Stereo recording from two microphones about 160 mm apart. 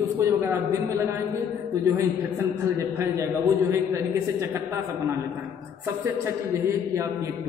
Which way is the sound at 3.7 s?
15° right (ahead or behind).